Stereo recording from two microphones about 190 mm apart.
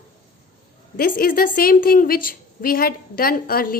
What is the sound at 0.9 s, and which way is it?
A woman's voice, 50° left (ahead or behind).